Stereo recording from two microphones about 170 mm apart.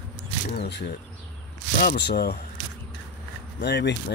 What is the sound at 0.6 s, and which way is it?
Speech, 80° left.